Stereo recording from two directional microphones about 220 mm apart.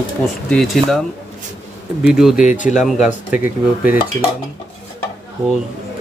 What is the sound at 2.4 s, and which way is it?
Speech, 35° left (ahead or behind).